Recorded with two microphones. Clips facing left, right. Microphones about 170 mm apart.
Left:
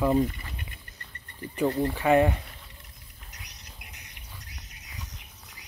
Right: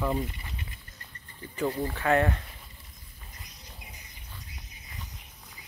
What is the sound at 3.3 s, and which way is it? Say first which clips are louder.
Squawk: even; 75° left (ahead or behind).